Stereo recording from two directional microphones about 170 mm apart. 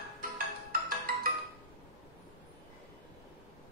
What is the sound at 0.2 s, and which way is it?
Music, 60° right (ahead or behind).